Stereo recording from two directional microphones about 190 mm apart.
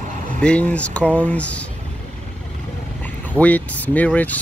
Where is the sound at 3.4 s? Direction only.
5° left (ahead or behind).